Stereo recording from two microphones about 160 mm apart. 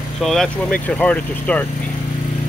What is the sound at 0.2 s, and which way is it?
Speech, centre (ahead or behind).